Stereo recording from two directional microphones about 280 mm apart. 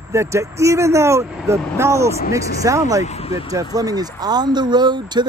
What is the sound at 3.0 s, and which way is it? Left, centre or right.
Speech, left.